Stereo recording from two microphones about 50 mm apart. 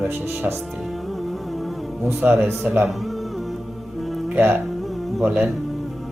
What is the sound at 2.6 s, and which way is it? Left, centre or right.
Speech, right.